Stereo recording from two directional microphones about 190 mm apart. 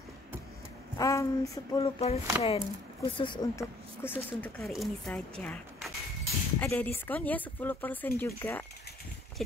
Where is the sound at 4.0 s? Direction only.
10° left (ahead or behind).